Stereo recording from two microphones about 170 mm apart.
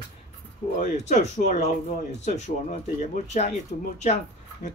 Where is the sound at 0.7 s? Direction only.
45° left (ahead or behind).